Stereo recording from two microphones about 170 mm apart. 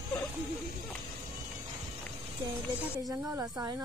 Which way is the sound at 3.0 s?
20° right (ahead or behind).